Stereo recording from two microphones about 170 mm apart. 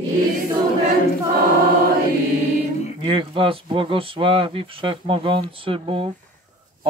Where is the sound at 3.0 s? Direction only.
30° right (ahead or behind).